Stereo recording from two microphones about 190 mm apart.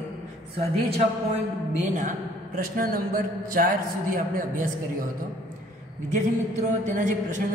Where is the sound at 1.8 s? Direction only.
40° right (ahead or behind).